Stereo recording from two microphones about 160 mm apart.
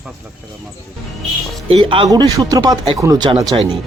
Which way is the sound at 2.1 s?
25° right (ahead or behind).